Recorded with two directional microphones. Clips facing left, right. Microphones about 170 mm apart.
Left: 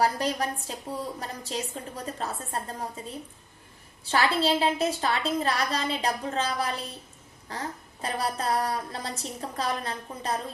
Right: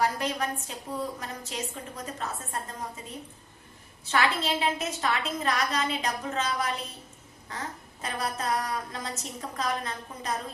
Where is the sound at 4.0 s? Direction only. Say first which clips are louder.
Left 2 dB; 35° left (ahead or behind).